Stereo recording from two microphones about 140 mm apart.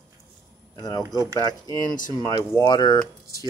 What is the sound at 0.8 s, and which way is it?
Speech, 30° left (ahead or behind).